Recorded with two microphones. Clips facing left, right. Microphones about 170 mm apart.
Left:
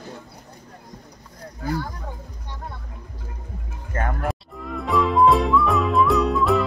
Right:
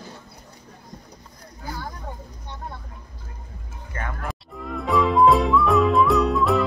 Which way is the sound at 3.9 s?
45° left (ahead or behind).